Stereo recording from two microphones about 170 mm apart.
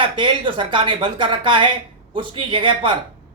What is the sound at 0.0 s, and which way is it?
A man's voice, 30° right (ahead or behind).